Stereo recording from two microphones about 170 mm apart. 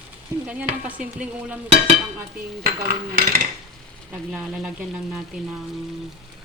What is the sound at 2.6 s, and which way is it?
Dishes, 60° right (ahead or behind).